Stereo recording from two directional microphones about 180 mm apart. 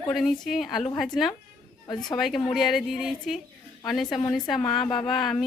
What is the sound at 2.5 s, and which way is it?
A woman's voice, centre (ahead or behind).